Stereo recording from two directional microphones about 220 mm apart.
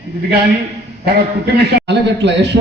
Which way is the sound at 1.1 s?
45° right (ahead or behind).